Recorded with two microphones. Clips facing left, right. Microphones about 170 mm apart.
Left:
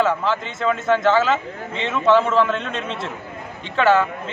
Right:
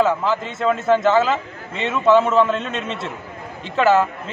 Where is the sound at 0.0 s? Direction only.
5° right (ahead or behind).